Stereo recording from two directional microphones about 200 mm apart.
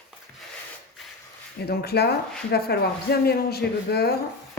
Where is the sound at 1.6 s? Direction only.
55° left (ahead or behind).